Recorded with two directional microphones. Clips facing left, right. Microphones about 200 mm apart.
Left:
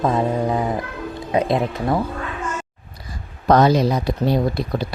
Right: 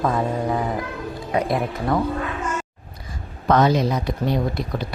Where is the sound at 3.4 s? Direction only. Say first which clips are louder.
Left 3 dB; 35° left (ahead or behind).